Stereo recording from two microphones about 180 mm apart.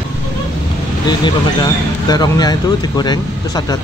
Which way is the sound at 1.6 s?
20° left (ahead or behind).